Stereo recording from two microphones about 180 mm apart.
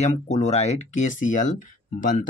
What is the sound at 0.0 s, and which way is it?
Speech, 40° left (ahead or behind).